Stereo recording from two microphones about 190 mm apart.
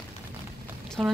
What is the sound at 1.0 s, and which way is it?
Speech, centre (ahead or behind).